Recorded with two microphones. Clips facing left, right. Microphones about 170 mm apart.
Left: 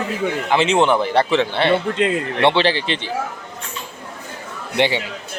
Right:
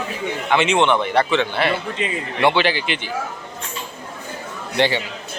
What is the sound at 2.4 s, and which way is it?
Speech, 30° left (ahead or behind).